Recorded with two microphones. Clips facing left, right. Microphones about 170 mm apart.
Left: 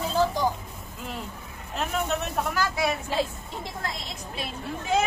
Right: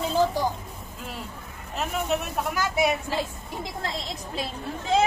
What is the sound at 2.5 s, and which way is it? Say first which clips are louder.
Vehicle: right 5 dB; 20° right (ahead or behind).